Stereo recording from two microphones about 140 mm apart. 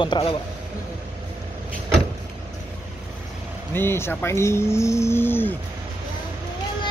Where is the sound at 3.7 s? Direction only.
15° left (ahead or behind).